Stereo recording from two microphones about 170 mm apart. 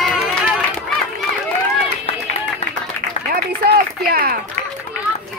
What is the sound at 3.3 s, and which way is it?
Run, 65° right (ahead or behind).